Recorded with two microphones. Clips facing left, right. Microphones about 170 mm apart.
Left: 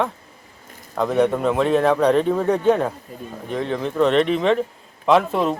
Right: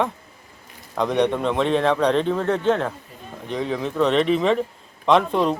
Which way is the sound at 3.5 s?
Centre (ahead or behind).